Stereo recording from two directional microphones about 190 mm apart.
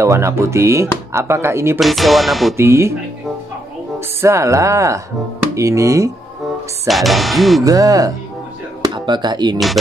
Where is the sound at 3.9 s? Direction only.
15° right (ahead or behind).